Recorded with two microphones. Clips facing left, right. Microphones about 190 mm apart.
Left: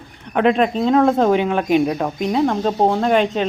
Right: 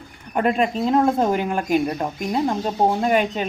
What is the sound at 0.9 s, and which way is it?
Speech, 85° left.